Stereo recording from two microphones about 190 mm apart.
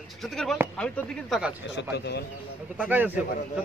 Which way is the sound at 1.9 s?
60° left (ahead or behind).